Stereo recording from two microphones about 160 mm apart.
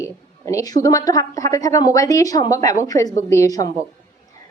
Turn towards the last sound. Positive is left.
turn(degrees=20)  # may be behind; listen again after turning